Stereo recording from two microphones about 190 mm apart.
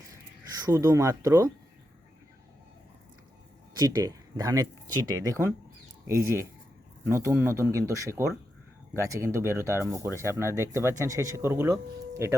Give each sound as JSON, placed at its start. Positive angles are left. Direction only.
{"t": 0.5, "sound": "speech", "side_deg": -15}
{"t": 3.8, "sound": "speech", "side_deg": -20}